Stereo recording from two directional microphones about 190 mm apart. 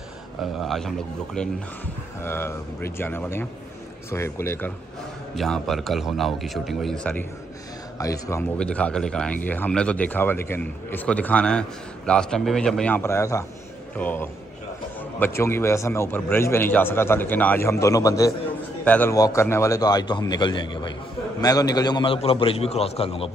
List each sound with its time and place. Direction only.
0.4 s a man's voice: centre (ahead or behind)
5.3 s a man's voice: centre (ahead or behind)
8.0 s a man's voice: 15° left (ahead or behind)